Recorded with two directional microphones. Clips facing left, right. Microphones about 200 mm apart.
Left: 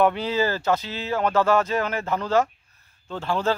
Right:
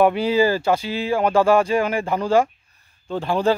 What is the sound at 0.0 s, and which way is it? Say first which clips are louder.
Speech: right 5 dB; 10° right (ahead or behind).